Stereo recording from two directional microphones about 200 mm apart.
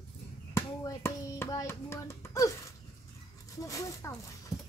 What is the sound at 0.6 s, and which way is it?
Hands, 15° left (ahead or behind).